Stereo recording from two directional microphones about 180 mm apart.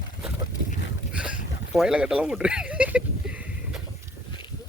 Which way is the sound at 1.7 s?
5° right (ahead or behind).